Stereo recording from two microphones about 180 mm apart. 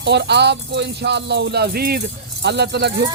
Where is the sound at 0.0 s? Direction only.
70° right (ahead or behind).